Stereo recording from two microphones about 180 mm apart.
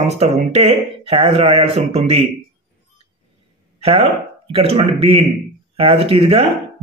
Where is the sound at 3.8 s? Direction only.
35° right (ahead or behind).